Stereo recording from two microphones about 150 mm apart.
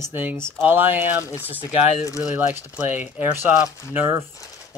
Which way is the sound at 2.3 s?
15° right (ahead or behind).